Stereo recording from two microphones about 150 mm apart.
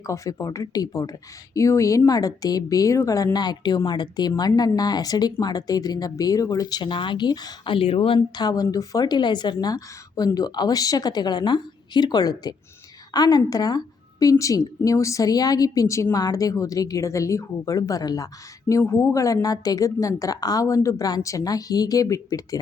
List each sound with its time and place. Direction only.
0.1 s speech: 20° left (ahead or behind)